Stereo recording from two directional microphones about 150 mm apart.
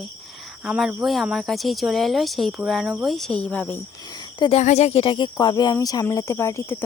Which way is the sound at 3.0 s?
Centre (ahead or behind).